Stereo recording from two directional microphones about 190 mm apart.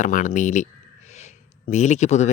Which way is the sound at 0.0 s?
45° left (ahead or behind).